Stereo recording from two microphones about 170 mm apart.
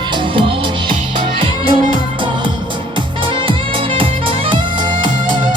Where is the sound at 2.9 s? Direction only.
30° right (ahead or behind).